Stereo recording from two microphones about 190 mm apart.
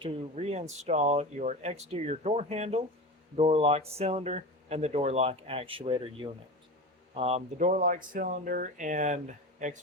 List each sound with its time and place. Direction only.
0.0 s speech: 30° right (ahead or behind)